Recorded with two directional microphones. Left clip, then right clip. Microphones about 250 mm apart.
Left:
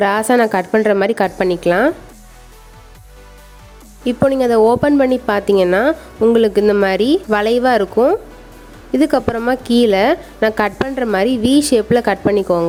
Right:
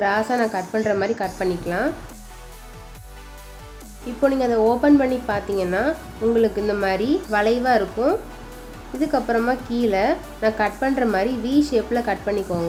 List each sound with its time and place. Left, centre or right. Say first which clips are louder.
0.0 s speech: left 7 dB; left
4.3 s speech: left 7 dB; left